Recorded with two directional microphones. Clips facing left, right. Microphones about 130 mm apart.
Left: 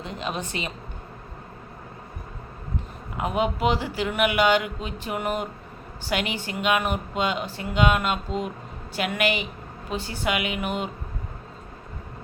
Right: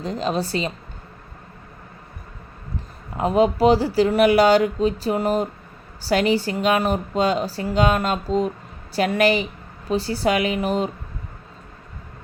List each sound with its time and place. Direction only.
0.0 s speech: 35° right (ahead or behind)
3.2 s speech: 35° right (ahead or behind)